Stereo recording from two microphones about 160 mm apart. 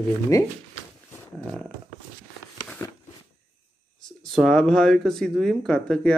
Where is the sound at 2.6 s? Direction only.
10° left (ahead or behind).